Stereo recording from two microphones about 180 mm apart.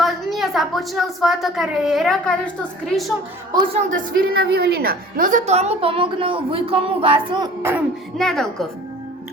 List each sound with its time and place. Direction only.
0.0 s a woman's voice: centre (ahead or behind)
3.7 s a woman's voice: 40° right (ahead or behind); by 7.5 s 25° right (ahead or behind)
7.6 s a sound: 10° right (ahead or behind)
8.2 s speech: centre (ahead or behind)